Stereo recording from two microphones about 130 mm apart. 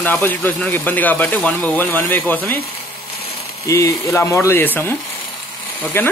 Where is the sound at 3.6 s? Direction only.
20° left (ahead or behind).